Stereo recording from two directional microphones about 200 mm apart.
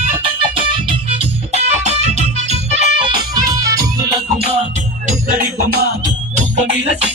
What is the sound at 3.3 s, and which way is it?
Music, 20° right (ahead or behind).